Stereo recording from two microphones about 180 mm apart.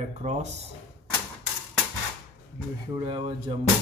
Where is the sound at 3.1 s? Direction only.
30° right (ahead or behind).